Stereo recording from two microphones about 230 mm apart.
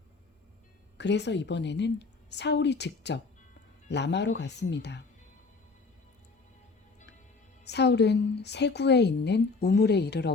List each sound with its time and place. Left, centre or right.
0.9 s a woman's voice: left
7.6 s a woman's voice: left